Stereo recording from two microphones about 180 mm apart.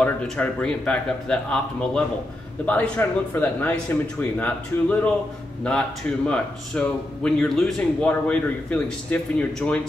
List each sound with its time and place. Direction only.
0.0 s speech: 5° left (ahead or behind)